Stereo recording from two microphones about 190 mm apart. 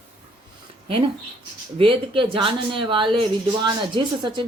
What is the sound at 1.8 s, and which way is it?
Speech, 25° right (ahead or behind).